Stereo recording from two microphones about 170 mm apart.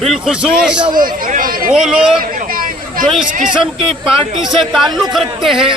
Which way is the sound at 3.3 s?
50° right (ahead or behind).